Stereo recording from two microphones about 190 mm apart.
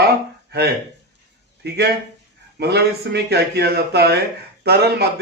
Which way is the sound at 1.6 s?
60° right (ahead or behind).